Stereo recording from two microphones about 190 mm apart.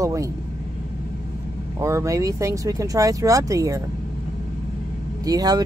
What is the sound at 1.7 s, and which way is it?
Speech, 15° right (ahead or behind).